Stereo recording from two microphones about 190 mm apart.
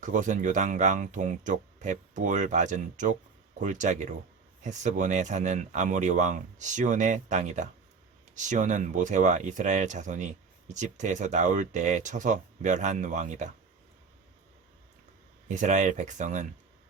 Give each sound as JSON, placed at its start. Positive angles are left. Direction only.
{"t": 0.0, "sound": "speech", "side_deg": -40}
{"t": 15.4, "sound": "speech", "side_deg": -40}